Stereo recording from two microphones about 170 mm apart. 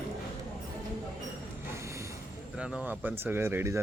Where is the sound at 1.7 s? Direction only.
15° right (ahead or behind).